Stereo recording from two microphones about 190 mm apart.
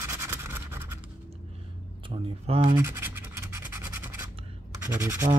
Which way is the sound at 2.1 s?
30° right (ahead or behind).